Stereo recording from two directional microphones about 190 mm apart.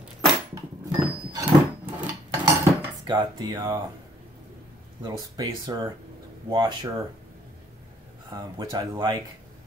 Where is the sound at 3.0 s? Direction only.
25° right (ahead or behind).